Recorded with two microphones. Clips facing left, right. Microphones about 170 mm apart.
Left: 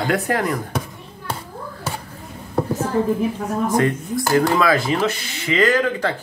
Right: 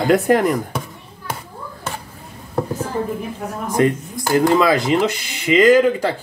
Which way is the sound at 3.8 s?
20° right (ahead or behind).